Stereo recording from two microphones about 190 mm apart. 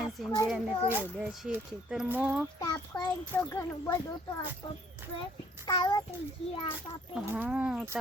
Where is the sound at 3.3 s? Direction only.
20° left (ahead or behind).